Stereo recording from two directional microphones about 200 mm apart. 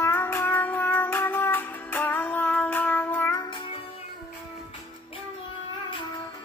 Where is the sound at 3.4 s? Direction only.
25° left (ahead or behind).